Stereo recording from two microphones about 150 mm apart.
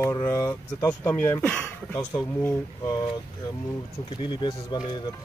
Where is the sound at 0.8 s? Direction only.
15° left (ahead or behind).